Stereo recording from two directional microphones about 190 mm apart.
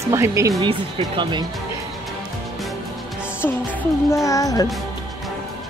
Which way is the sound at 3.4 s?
10° left (ahead or behind).